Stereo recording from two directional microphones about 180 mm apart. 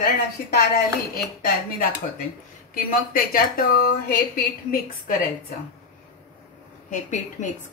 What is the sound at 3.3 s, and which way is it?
Speech, 55° left (ahead or behind).